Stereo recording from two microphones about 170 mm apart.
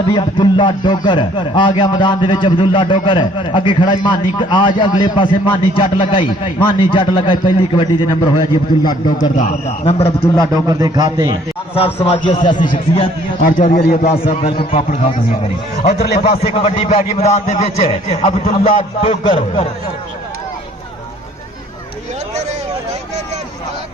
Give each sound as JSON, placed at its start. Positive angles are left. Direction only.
{"t": 0.1, "sound": "speech", "side_deg": 30}
{"t": 9.3, "sound": "a man's voice", "side_deg": 45}
{"t": 9.8, "sound": "a man's voice", "side_deg": 35}
{"t": 10.2, "sound": "speech", "side_deg": 20}
{"t": 10.5, "sound": "a man's voice", "side_deg": -20}
{"t": 11.7, "sound": "a man's voice", "side_deg": 35}
{"t": 13.4, "sound": "a man's voice", "side_deg": 50}
{"t": 14.0, "sound": "a man's voice", "side_deg": 35}
{"t": 14.7, "sound": "a man's voice", "side_deg": 55}
{"t": 16.3, "sound": "a man's voice", "side_deg": 35}
{"t": 18.6, "sound": "a man's voice", "side_deg": 45}
{"t": 19.2, "sound": "speech", "side_deg": 30}